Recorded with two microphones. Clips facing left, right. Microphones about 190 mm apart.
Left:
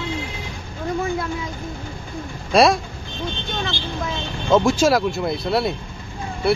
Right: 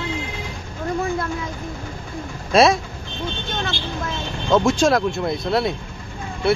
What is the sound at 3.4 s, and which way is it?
Vehicle, centre (ahead or behind).